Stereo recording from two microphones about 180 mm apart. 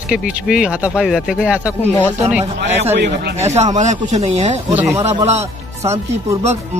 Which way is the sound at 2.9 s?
70° right (ahead or behind).